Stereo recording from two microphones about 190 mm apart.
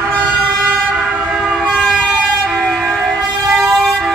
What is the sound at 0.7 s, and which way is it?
Vehicle, 5° right (ahead or behind).